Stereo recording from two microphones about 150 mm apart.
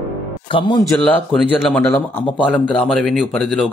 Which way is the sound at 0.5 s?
30° left (ahead or behind).